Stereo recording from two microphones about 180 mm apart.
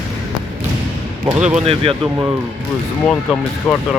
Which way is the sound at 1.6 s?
30° right (ahead or behind).